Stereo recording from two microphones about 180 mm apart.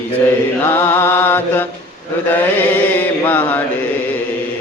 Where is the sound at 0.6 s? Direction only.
10° left (ahead or behind).